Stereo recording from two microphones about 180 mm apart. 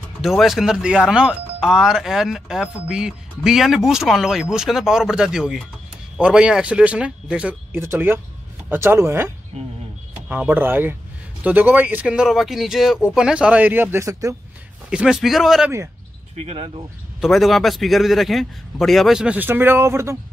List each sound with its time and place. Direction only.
0.2 s a man's voice: centre (ahead or behind)
14.9 s a man's voice: 5° right (ahead or behind)
16.4 s speech: 30° right (ahead or behind)
17.2 s a man's voice: centre (ahead or behind)